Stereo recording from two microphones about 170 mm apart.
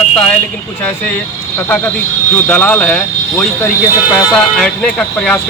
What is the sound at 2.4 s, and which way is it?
Speech, 10° left (ahead or behind).